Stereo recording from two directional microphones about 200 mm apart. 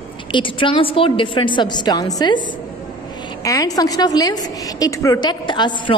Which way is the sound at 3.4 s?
15° left (ahead or behind).